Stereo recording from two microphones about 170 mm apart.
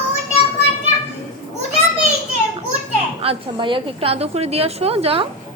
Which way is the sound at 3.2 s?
30° right (ahead or behind).